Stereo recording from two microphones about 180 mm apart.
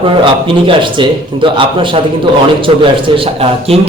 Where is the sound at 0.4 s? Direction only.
25° right (ahead or behind).